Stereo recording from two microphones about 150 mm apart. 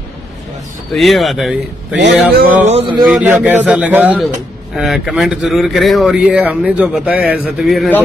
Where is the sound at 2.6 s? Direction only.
45° right (ahead or behind).